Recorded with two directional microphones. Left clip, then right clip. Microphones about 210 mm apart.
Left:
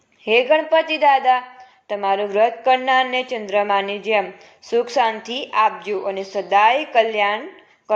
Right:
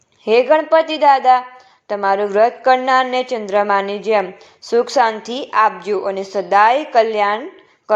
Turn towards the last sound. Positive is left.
turn(degrees=-30)  # may be behind; listen again after turning